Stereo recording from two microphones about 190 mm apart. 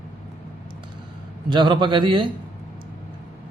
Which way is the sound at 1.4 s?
25° right (ahead or behind).